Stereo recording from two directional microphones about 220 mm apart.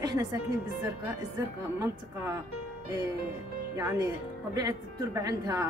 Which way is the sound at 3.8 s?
10° right (ahead or behind).